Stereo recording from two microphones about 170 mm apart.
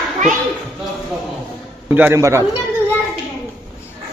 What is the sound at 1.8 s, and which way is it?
Speech, 10° right (ahead or behind).